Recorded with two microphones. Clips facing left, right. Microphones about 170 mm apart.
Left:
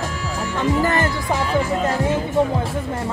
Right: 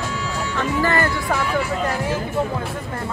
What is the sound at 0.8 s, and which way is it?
Speech, 20° left (ahead or behind).